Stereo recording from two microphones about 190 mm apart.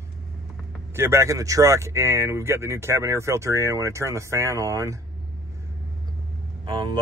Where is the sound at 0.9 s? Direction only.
15° right (ahead or behind).